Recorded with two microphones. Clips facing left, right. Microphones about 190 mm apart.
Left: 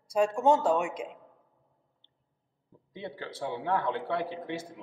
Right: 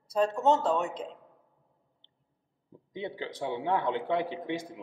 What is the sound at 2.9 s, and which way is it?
Speech, 15° right (ahead or behind).